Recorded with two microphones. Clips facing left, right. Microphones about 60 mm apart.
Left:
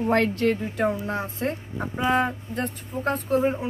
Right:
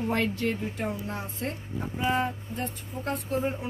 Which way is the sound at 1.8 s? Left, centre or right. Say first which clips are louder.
Left 4 dB; left.